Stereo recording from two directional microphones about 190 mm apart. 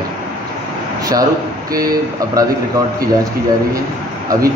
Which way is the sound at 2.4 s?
20° right (ahead or behind).